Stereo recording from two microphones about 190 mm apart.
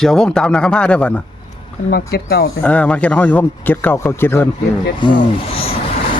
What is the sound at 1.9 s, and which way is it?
Speech, 55° left (ahead or behind).